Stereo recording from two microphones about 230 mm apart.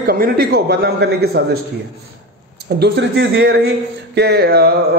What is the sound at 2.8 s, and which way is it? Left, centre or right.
A man's voice, right.